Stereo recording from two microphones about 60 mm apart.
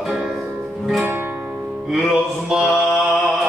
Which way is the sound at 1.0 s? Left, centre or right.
Right.